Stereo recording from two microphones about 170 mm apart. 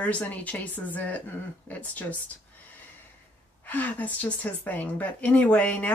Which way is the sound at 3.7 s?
10° left (ahead or behind).